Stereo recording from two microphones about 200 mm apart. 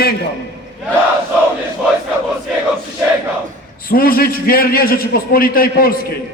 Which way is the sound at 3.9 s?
45° left (ahead or behind).